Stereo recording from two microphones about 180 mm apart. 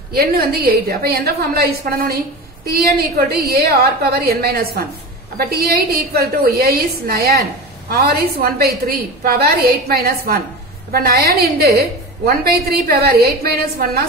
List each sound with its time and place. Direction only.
0.1 s a woman's voice: 60° right (ahead or behind)